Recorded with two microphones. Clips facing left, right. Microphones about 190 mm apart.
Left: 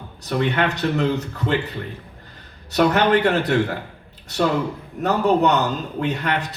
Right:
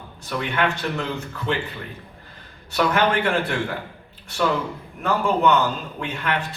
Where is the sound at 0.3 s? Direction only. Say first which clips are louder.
Left 3 dB; 40° left (ahead or behind).